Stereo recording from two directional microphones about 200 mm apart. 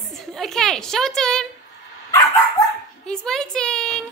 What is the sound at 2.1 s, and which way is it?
Dog, 15° left (ahead or behind).